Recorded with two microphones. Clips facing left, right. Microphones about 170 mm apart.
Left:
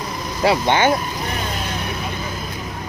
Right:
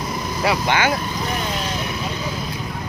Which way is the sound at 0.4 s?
25° left (ahead or behind).